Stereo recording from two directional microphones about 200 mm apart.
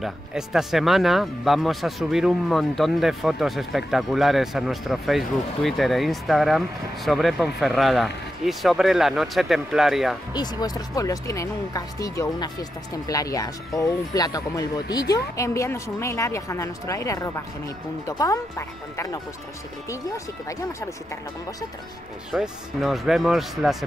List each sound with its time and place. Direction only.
0.0 s speech: centre (ahead or behind)
10.3 s speech: 20° left (ahead or behind)
20.4 s speech: 15° left (ahead or behind)
22.3 s speech: centre (ahead or behind)